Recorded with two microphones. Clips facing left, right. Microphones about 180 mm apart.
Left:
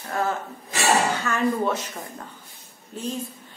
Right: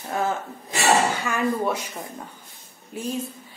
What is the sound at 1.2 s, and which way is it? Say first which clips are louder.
A woman's voice: left 1 dB; 10° right (ahead or behind).